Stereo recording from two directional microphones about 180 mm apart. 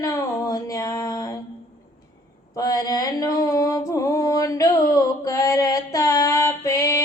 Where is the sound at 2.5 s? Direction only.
20° left (ahead or behind).